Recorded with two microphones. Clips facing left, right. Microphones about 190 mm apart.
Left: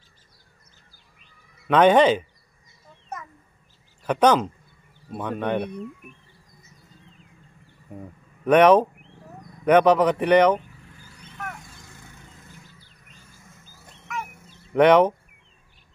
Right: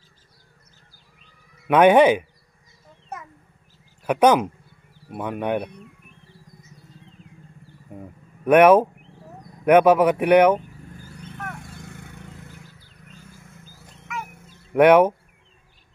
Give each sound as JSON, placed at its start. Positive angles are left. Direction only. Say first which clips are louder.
{"t": 1.7, "sound": "speech", "louder": "right 2 dB", "side_deg": -10}
{"t": 4.0, "sound": "speech", "louder": "right 2 dB", "side_deg": -10}
{"t": 7.9, "sound": "speech", "louder": "even", "side_deg": -5}
{"t": 11.5, "sound": "vehicle", "louder": "right 6 dB", "side_deg": -60}
{"t": 14.7, "sound": "speech", "louder": "right 2 dB", "side_deg": -10}